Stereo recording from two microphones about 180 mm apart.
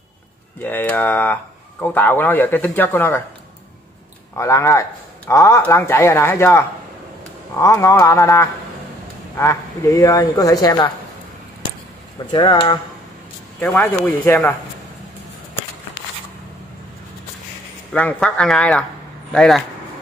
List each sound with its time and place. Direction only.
0.6 s speech: 10° left (ahead or behind)
4.4 s speech: 15° left (ahead or behind)
7.6 s speech: 15° left (ahead or behind)
12.3 s speech: 25° left (ahead or behind)
13.6 s speech: 10° left (ahead or behind)
17.9 s speech: 5° left (ahead or behind)